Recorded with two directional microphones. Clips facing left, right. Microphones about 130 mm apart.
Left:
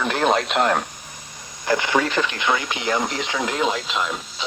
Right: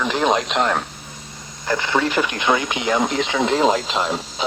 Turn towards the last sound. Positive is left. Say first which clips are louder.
# right 5 dB
turn(degrees=-35)  # may be behind; listen again after turning